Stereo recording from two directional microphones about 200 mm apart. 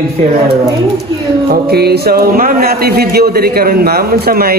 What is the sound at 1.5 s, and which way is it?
A man's voice, 50° right (ahead or behind).